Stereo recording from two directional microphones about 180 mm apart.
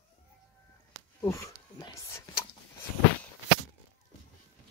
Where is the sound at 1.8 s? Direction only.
20° left (ahead or behind).